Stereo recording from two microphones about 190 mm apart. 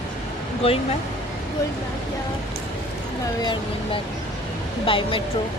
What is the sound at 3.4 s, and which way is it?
Speech, 25° left (ahead or behind).